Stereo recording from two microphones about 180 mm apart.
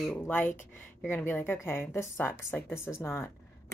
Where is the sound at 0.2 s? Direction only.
10° left (ahead or behind).